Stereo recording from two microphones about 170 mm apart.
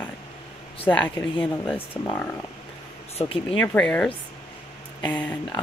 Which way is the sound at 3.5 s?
5° left (ahead or behind).